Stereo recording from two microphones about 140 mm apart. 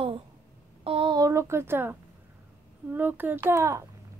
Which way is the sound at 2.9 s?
15° right (ahead or behind).